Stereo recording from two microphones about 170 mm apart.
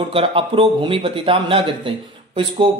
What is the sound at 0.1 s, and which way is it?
A man's voice, 30° right (ahead or behind).